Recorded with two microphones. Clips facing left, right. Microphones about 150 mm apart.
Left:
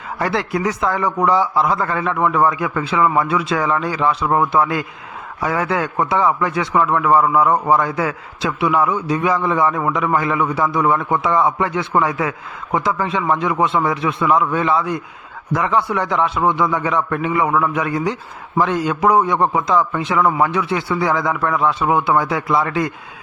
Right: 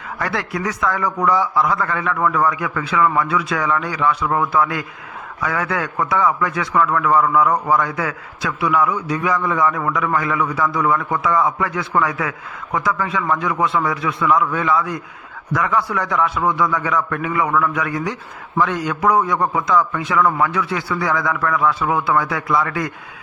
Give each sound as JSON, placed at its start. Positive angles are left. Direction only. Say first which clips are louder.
{"t": 0.2, "sound": "a man's voice", "louder": "left 4 dB", "side_deg": 25}